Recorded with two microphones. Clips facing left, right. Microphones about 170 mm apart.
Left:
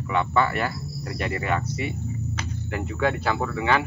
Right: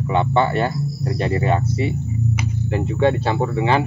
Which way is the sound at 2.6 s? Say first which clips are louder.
Right 7 dB; 30° right (ahead or behind).